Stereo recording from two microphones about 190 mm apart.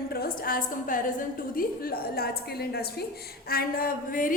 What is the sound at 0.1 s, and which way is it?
A woman's voice, 50° left (ahead or behind).